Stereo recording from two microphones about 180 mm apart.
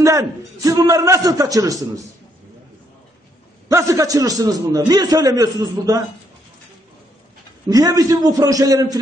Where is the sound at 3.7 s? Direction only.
15° right (ahead or behind).